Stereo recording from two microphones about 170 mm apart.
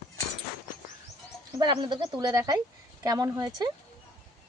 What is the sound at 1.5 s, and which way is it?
Speech, 25° right (ahead or behind).